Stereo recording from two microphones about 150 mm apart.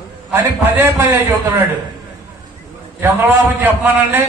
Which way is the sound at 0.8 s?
15° right (ahead or behind).